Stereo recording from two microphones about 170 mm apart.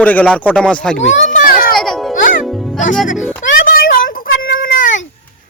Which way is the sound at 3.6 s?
55° left (ahead or behind).